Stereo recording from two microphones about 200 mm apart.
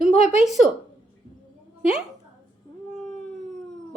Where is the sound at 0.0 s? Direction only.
35° left (ahead or behind).